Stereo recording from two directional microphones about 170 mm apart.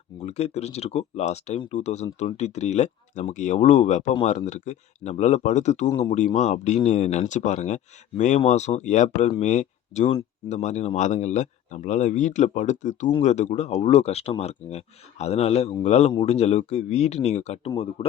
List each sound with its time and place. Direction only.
0.2 s speech: 40° left (ahead or behind)